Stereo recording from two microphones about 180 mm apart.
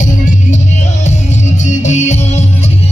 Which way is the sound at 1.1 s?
40° left (ahead or behind).